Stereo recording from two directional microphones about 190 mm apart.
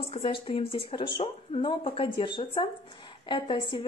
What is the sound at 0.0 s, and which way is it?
Speech, 30° left (ahead or behind).